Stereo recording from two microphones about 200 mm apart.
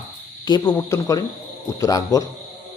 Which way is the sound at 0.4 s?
20° left (ahead or behind).